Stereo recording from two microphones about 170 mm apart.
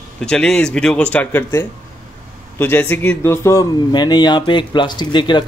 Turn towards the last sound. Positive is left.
turn(degrees=25)  # may be behind; listen again after turning